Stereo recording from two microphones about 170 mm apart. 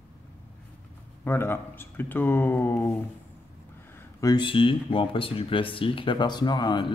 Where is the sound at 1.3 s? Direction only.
15° left (ahead or behind).